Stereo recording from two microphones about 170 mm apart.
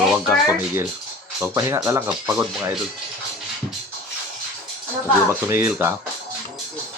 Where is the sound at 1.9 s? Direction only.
15° right (ahead or behind).